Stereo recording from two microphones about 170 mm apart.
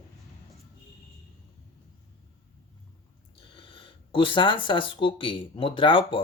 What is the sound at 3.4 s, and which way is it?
Speech, 30° left (ahead or behind).